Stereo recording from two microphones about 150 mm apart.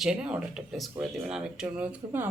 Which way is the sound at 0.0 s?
5° right (ahead or behind).